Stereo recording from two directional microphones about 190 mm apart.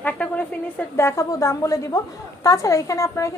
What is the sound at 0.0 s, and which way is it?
A woman's voice, 5° left (ahead or behind).